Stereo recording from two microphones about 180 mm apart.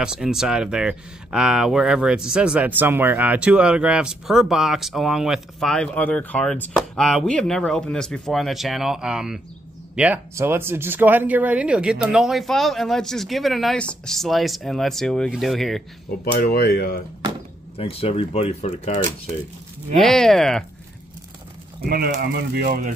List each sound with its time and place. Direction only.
0.0 s speech: 5° right (ahead or behind)
16.3 s speech: 55° left (ahead or behind)
17.7 s speech: 30° left (ahead or behind)
20.0 s speech: centre (ahead or behind)
21.8 s speech: 60° right (ahead or behind)